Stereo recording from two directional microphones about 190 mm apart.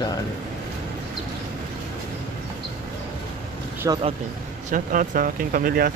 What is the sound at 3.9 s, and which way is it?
Speech, 20° right (ahead or behind).